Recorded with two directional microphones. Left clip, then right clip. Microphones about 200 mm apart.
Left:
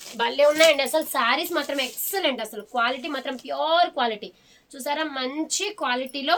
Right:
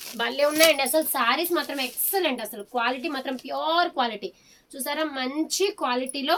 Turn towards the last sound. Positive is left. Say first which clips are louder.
# even
turn(degrees=30)  # may be behind; listen again after turning